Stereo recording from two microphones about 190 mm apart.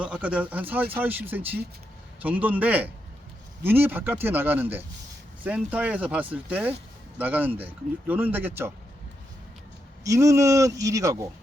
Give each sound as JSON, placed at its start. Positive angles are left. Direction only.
{"t": 0.0, "sound": "speech", "side_deg": -5}
{"t": 10.0, "sound": "speech", "side_deg": -15}